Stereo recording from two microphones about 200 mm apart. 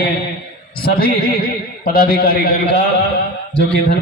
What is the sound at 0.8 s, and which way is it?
A man's voice, 50° left (ahead or behind).